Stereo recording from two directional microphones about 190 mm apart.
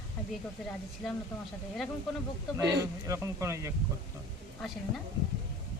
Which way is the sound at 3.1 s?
15° right (ahead or behind).